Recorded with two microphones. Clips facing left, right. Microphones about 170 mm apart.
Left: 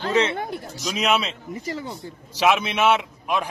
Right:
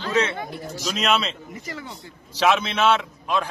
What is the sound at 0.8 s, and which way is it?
Speech, 5° left (ahead or behind).